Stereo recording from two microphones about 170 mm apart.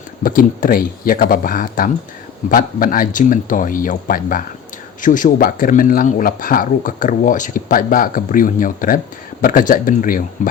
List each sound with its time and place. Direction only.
0.2 s speech: 55° left (ahead or behind)